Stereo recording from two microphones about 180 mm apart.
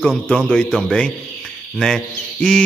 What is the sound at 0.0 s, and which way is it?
A man's voice, 5° left (ahead or behind).